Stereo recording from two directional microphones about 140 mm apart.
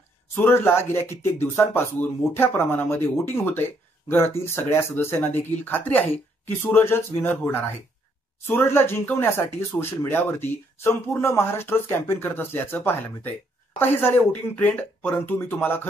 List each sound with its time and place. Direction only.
0.4 s speech: 15° left (ahead or behind)